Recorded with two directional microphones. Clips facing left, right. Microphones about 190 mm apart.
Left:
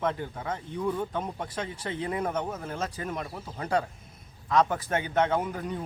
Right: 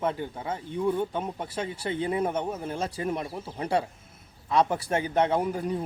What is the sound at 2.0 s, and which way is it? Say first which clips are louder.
Speech: right 2 dB; 25° right (ahead or behind).